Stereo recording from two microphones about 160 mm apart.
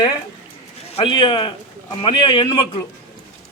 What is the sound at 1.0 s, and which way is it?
A man's voice, 30° left (ahead or behind).